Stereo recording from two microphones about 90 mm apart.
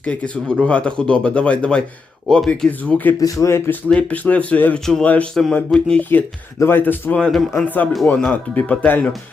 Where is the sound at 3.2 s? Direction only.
35° left (ahead or behind).